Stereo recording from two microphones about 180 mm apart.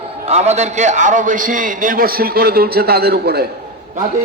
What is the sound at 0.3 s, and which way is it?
A man's voice, 40° right (ahead or behind).